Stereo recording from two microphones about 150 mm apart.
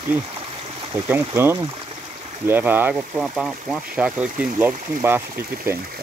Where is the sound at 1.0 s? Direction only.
15° right (ahead or behind).